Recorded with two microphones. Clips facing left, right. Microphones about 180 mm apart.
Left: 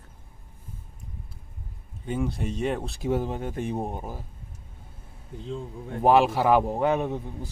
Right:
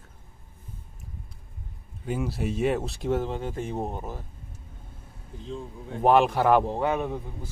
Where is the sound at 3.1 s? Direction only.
10° left (ahead or behind).